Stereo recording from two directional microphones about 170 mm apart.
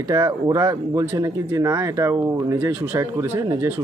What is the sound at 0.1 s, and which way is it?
A man's voice, 20° right (ahead or behind).